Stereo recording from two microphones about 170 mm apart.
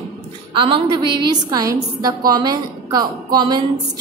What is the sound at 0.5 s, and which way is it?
A woman's voice, 25° right (ahead or behind).